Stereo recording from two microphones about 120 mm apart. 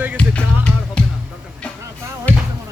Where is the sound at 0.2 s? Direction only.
10° left (ahead or behind).